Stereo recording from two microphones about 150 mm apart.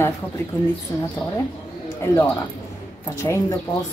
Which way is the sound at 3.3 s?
20° left (ahead or behind).